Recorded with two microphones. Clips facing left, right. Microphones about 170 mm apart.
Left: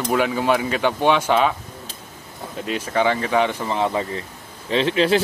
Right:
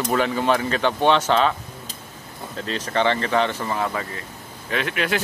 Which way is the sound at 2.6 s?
10° left (ahead or behind).